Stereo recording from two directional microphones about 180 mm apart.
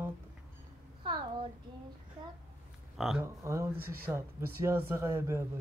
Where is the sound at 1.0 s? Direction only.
30° right (ahead or behind).